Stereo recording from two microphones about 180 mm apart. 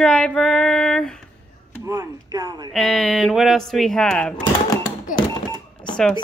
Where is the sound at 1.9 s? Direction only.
20° right (ahead or behind).